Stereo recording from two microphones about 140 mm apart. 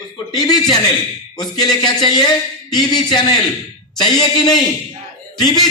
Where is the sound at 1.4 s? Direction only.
30° left (ahead or behind).